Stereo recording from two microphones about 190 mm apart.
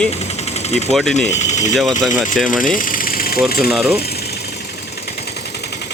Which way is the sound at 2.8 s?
45° left (ahead or behind).